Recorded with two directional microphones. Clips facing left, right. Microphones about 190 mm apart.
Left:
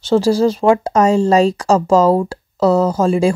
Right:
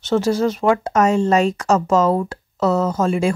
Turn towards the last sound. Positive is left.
turn(degrees=35)  # may be behind; listen again after turning